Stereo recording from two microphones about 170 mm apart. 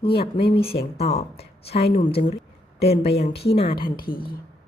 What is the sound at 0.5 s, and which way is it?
A woman's voice, 35° left (ahead or behind).